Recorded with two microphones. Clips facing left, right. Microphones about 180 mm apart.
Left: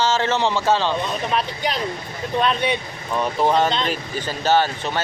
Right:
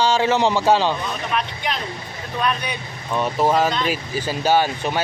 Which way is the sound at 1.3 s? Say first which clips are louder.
Left 2 dB; 35° left (ahead or behind).